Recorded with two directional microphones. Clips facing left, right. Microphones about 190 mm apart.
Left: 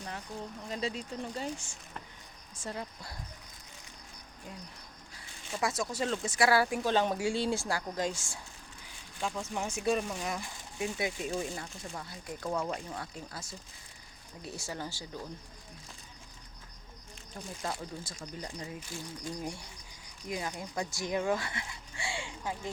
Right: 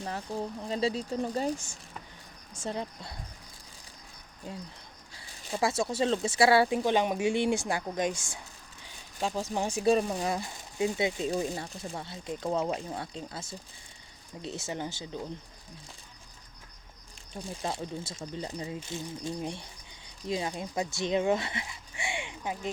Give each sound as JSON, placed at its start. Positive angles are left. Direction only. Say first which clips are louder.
{"t": 0.7, "sound": "speech", "louder": "right 6 dB", "side_deg": -30}
{"t": 2.6, "sound": "speech", "louder": "right 5 dB", "side_deg": -25}
{"t": 4.5, "sound": "speech", "louder": "right 6 dB", "side_deg": -30}
{"t": 9.1, "sound": "speech", "louder": "right 4 dB", "side_deg": -35}
{"t": 17.3, "sound": "speech", "louder": "right 3 dB", "side_deg": -20}